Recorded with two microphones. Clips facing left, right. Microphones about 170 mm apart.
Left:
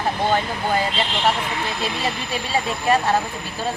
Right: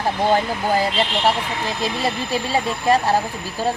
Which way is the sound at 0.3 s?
35° right (ahead or behind).